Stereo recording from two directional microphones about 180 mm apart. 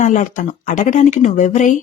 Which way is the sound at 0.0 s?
45° left (ahead or behind).